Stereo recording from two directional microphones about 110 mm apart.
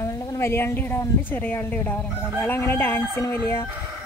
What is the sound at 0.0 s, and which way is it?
A woman's voice, 30° left (ahead or behind).